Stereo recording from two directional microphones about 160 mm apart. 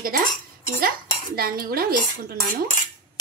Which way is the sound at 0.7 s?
70° right (ahead or behind).